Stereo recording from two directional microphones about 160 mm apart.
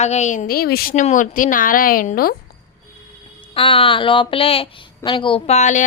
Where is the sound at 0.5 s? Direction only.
75° left (ahead or behind).